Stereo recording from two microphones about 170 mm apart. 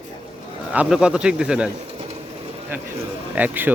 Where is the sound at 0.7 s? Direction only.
5° right (ahead or behind).